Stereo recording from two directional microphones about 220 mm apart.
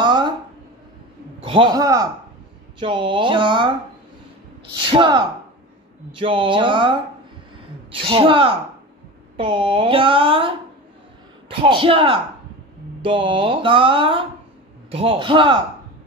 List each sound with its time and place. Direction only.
0.0 s a sound: 20° right (ahead or behind)
1.4 s a man's voice: 20° right (ahead or behind)
2.8 s music: 20° right (ahead or behind)
4.8 s music: 20° right (ahead or behind)